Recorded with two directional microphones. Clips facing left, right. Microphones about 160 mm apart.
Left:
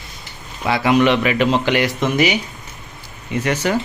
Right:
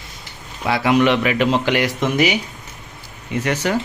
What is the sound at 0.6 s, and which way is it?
Speech, centre (ahead or behind).